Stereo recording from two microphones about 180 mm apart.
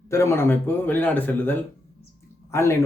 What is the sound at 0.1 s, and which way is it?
Speech, 15° left (ahead or behind).